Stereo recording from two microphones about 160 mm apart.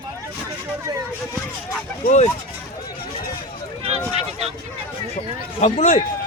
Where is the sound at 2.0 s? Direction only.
45° left (ahead or behind).